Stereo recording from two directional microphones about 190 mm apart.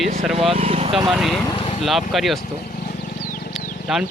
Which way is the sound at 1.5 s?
25° left (ahead or behind).